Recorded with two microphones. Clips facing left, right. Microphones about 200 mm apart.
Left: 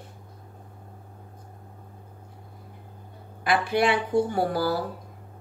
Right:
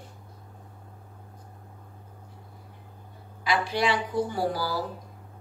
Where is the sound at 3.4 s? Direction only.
55° left (ahead or behind).